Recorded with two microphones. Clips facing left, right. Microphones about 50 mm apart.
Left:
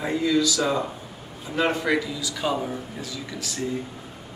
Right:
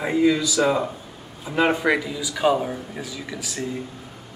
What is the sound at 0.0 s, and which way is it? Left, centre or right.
Speech, centre.